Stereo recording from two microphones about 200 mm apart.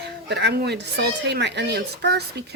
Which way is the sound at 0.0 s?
60° right (ahead or behind).